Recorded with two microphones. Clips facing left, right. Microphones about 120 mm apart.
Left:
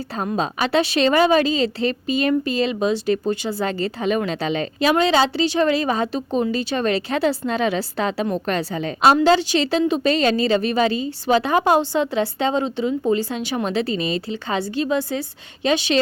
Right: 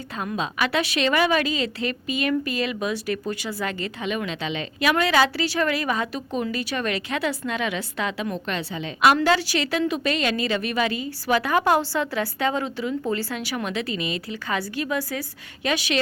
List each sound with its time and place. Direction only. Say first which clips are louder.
0.2 s a woman's voice: left 3 dB; 40° left (ahead or behind)
4.8 s a woman's voice: left 3 dB; 25° left (ahead or behind)
9.1 s a woman's voice: left 5 dB; 25° left (ahead or behind)